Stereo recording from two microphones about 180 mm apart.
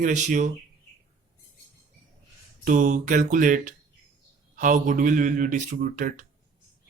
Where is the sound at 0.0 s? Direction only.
45° right (ahead or behind).